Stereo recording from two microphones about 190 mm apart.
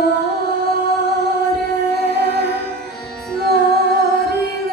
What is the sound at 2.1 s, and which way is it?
Music, 60° right (ahead or behind).